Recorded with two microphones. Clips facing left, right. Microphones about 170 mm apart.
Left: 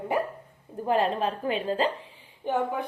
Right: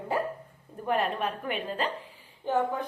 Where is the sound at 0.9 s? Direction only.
30° left (ahead or behind).